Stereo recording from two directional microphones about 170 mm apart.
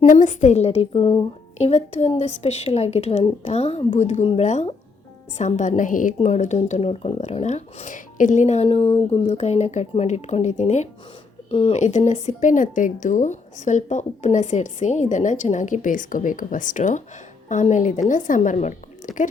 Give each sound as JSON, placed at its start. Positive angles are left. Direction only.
{"t": 0.0, "sound": "a woman's voice", "side_deg": 50}